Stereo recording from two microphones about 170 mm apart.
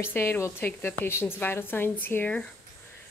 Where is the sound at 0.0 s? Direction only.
15° left (ahead or behind).